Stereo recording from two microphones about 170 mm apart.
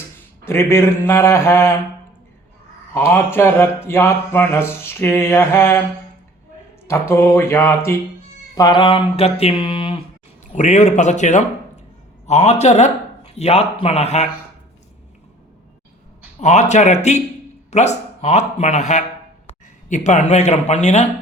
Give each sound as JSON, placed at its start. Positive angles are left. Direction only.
{"t": 0.4, "sound": "speech", "side_deg": 15}
{"t": 2.9, "sound": "speech", "side_deg": 15}
{"t": 7.1, "sound": "speech", "side_deg": 15}
{"t": 8.5, "sound": "speech", "side_deg": 25}
{"t": 10.5, "sound": "a man's voice", "side_deg": 45}
{"t": 16.4, "sound": "a man's voice", "side_deg": 40}